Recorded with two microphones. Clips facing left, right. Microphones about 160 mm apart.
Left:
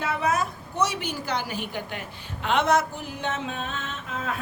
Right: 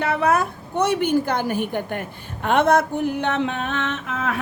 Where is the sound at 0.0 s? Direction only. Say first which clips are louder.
Right 6 dB; 65° right (ahead or behind).